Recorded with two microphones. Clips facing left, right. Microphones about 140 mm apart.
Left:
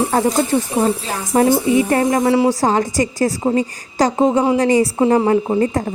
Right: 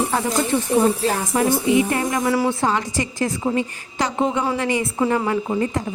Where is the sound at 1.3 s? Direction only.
50° left (ahead or behind).